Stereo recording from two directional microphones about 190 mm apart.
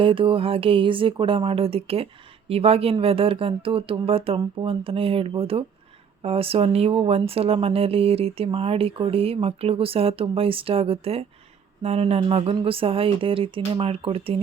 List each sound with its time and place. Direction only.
0.0 s speech: 25° right (ahead or behind)